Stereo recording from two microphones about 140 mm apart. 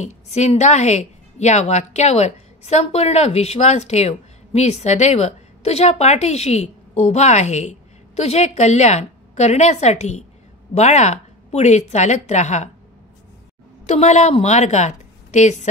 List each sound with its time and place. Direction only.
0.0 s a woman's voice: 55° left (ahead or behind)
13.8 s a woman's voice: 55° left (ahead or behind)